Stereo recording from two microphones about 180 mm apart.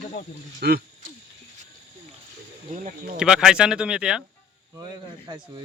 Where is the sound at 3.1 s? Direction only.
5° right (ahead or behind).